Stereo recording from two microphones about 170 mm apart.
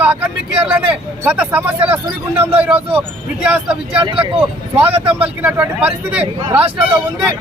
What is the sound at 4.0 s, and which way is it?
Speech, 30° right (ahead or behind).